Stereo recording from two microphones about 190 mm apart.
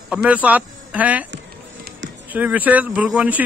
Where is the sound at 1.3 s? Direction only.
70° right (ahead or behind).